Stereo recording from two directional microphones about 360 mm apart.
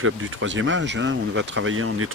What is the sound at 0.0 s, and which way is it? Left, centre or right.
Speech, right.